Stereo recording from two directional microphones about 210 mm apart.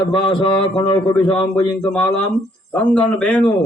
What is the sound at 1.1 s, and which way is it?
A man's voice, 5° left (ahead or behind).